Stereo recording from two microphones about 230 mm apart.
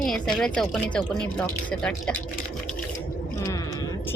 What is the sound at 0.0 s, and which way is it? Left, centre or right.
A woman's voice, centre.